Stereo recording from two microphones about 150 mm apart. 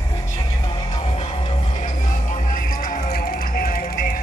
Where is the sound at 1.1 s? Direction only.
45° left (ahead or behind).